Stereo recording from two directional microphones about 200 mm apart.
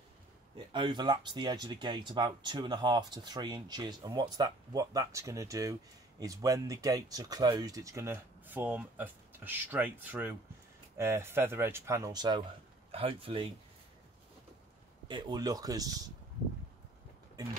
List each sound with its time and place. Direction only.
0.7 s speech: 25° right (ahead or behind)
15.0 s speech: 20° right (ahead or behind)